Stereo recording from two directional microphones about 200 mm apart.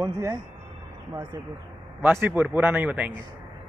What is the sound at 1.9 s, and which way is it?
Speech, 10° right (ahead or behind).